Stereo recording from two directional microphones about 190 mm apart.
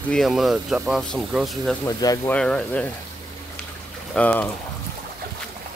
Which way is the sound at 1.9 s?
20° left (ahead or behind).